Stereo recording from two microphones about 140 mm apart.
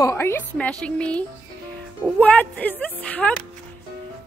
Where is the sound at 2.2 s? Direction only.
10° left (ahead or behind).